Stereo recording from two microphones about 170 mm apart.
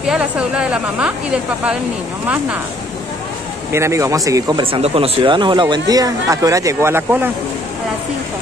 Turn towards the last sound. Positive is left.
turn(degrees=-15)  # may be behind; listen again after turning